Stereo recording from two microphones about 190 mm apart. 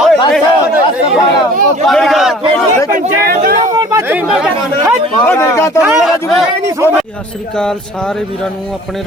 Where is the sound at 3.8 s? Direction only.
10° right (ahead or behind).